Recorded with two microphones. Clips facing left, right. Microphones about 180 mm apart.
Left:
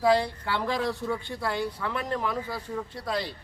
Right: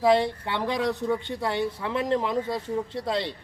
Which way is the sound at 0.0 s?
20° right (ahead or behind).